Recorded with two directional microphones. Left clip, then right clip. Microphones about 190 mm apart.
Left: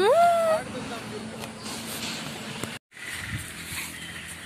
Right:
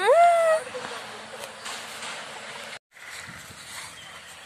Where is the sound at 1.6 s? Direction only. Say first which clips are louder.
Left 2 dB; 35° right (ahead or behind).